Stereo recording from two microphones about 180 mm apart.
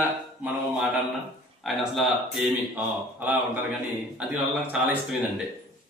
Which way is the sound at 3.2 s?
10° right (ahead or behind).